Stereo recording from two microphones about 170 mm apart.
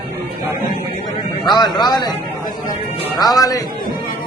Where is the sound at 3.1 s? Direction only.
20° left (ahead or behind).